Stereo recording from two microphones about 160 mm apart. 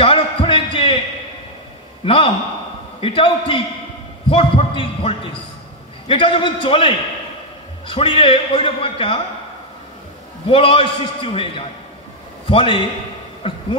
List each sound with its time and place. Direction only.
0.0 s music: 35° left (ahead or behind)
2.0 s a man's voice: 30° left (ahead or behind)
10.5 s a man's voice: 35° left (ahead or behind)